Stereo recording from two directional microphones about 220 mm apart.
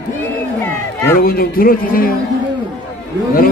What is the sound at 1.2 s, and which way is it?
Speech, 45° left (ahead or behind).